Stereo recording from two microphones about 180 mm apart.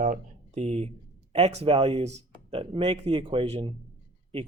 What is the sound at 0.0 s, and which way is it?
Speech, 40° right (ahead or behind).